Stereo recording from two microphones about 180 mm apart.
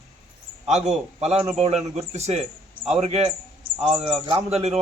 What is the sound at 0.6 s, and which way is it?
A man's voice, 40° right (ahead or behind).